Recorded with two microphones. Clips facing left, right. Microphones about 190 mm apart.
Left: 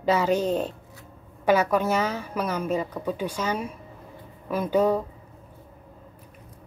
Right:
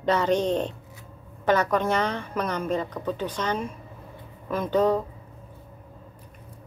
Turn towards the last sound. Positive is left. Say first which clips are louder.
# even
turn(degrees=10)  # may be behind; listen again after turning